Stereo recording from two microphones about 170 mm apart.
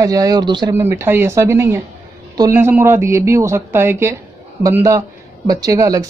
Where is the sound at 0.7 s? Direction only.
15° right (ahead or behind).